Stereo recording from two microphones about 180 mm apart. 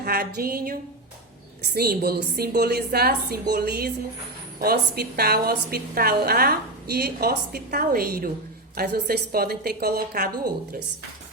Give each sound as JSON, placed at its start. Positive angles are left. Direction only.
{"t": 0.0, "sound": "a woman's voice", "side_deg": -60}